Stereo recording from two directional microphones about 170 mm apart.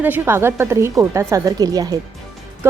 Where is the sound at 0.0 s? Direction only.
10° right (ahead or behind).